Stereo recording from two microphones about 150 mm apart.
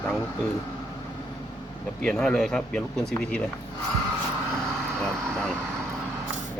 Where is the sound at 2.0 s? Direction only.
5° left (ahead or behind).